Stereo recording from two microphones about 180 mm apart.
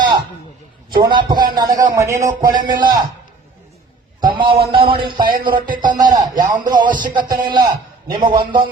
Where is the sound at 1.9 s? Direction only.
15° right (ahead or behind).